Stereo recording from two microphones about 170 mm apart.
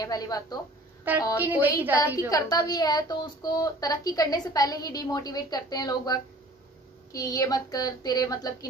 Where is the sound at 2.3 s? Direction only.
20° left (ahead or behind).